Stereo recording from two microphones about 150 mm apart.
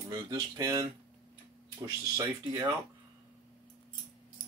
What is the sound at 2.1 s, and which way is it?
Speech, 20° right (ahead or behind).